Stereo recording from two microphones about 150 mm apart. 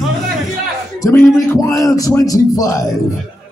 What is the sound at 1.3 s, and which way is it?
Speech, 20° left (ahead or behind).